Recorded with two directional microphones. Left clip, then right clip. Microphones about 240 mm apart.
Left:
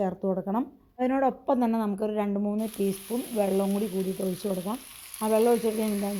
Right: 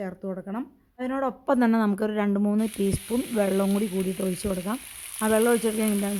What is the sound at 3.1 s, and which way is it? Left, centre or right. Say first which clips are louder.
Frying: right 3 dB; right.